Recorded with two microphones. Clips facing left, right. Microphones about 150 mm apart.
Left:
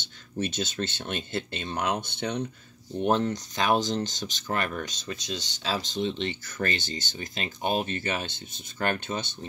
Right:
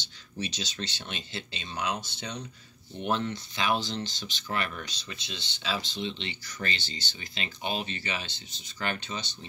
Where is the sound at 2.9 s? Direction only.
40° left (ahead or behind).